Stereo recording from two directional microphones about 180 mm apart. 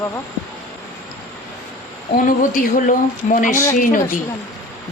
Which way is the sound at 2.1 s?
50° left (ahead or behind).